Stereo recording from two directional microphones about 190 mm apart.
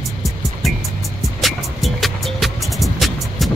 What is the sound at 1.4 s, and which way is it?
Music, centre (ahead or behind).